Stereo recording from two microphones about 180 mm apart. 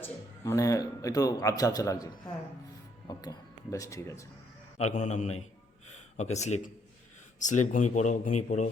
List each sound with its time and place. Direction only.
0.0 s speech: 15° left (ahead or behind)
4.8 s a man's voice: 40° left (ahead or behind)